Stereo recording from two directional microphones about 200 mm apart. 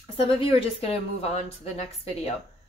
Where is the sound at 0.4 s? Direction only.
30° left (ahead or behind).